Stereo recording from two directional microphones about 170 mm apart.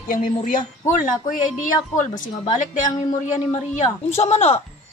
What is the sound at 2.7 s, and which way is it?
Speech, 45° left (ahead or behind).